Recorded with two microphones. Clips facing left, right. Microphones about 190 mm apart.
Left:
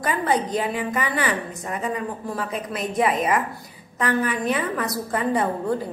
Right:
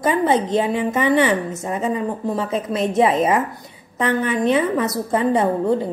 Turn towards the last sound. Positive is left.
turn(degrees=-25)  # may be behind; listen again after turning